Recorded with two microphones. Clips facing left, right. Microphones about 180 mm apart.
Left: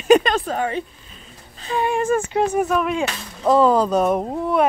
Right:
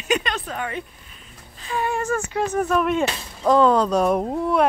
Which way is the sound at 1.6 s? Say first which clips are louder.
Left 3 dB; 30° left (ahead or behind).